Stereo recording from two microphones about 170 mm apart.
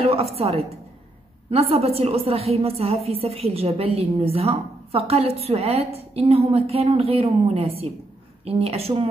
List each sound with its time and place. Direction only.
0.0 s a woman's voice: 35° right (ahead or behind)